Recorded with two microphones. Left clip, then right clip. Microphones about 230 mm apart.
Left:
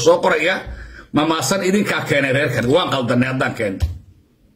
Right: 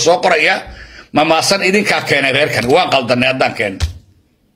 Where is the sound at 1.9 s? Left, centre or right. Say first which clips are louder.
Right 5 dB; centre.